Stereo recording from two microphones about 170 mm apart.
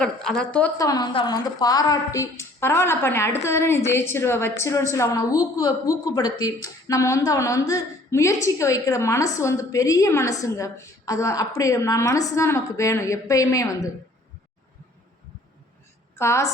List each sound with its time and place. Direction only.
0.0 s a woman's voice: 5° left (ahead or behind)
0.8 s a woman's voice: 20° left (ahead or behind)
16.1 s a woman's voice: 15° left (ahead or behind)